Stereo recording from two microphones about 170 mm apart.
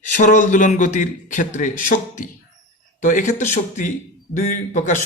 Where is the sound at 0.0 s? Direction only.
50° left (ahead or behind).